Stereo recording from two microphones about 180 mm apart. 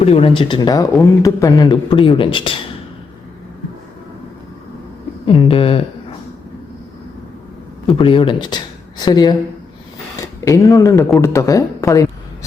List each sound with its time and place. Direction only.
0.0 s speech: 35° left (ahead or behind)
5.2 s speech: 30° left (ahead or behind)
7.9 s speech: 30° left (ahead or behind)